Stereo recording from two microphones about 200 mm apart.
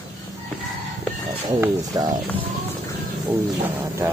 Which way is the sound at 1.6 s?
20° right (ahead or behind).